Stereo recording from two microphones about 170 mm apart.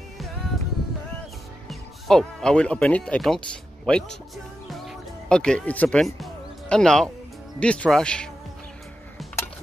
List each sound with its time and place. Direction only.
1.7 s speech: 5° left (ahead or behind)
5.3 s speech: 5° left (ahead or behind)